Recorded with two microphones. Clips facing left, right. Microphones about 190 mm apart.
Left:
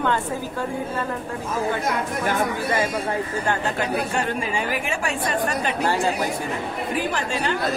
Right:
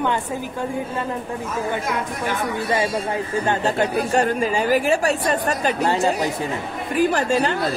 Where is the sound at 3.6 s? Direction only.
35° right (ahead or behind).